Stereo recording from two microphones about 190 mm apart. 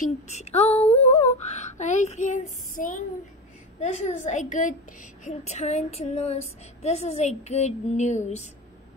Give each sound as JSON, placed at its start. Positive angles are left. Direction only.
{"t": 0.0, "sound": "a woman's voice", "side_deg": 35}
{"t": 1.1, "sound": "a sound", "side_deg": 35}
{"t": 3.8, "sound": "a woman's voice", "side_deg": 35}